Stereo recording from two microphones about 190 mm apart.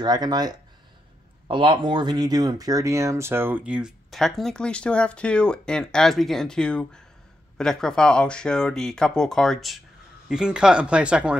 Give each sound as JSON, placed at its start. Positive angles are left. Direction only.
{"t": 0.0, "sound": "speech", "side_deg": -20}